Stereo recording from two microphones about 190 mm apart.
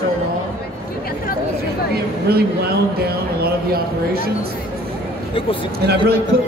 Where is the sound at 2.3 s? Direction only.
55° right (ahead or behind).